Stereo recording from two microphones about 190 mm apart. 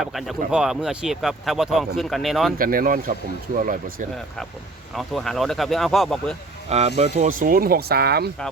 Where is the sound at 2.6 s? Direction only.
50° right (ahead or behind).